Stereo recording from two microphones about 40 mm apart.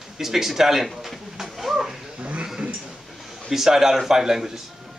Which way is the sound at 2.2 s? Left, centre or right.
Right.